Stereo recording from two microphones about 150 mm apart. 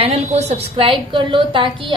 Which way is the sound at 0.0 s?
45° right (ahead or behind).